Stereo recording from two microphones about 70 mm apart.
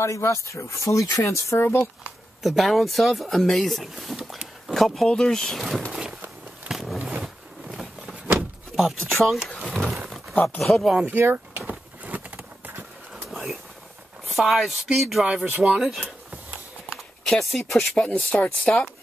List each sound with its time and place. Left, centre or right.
0.0 s speech: left
1.6 s speech: left
2.4 s speech: centre
6.7 s a sound: centre
8.4 s vehicle: centre
9.2 s speech: centre
10.3 s speech: left
10.6 s speech: centre
11.1 s speech: right
11.6 s a sound: right
13.3 s a sound: centre
14.2 s speech: centre
17.3 s speech: centre